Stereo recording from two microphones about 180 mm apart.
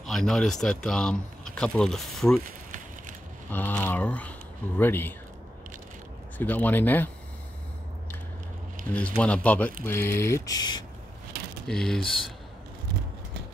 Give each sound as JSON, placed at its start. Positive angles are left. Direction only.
{"t": 0.0, "sound": "speech", "side_deg": 0}
{"t": 2.4, "sound": "a sound", "side_deg": -45}
{"t": 3.5, "sound": "speech", "side_deg": 10}
{"t": 6.3, "sound": "speech", "side_deg": 10}
{"t": 8.9, "sound": "speech", "side_deg": 5}
{"t": 11.6, "sound": "speech", "side_deg": 5}